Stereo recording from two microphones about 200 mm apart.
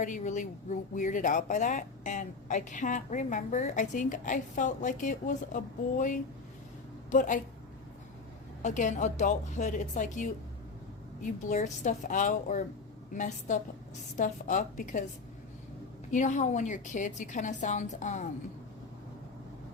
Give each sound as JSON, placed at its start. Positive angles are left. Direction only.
{"t": 0.0, "sound": "speech", "side_deg": 40}
{"t": 8.6, "sound": "speech", "side_deg": 40}
{"t": 16.1, "sound": "speech", "side_deg": 35}